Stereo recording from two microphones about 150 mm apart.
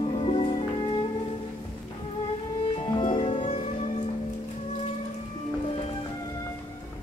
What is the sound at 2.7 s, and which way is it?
Music, 35° left (ahead or behind).